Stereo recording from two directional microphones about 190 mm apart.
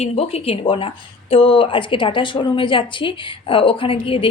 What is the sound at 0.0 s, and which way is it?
A woman's voice, 35° left (ahead or behind).